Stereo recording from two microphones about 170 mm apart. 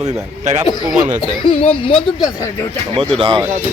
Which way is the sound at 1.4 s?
35° left (ahead or behind).